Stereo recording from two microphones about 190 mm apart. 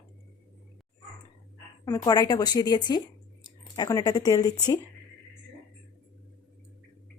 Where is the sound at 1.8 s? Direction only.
20° left (ahead or behind).